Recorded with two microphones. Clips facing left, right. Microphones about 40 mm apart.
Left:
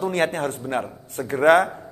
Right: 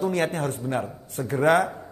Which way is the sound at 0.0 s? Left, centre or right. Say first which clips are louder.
Left 2 dB; left.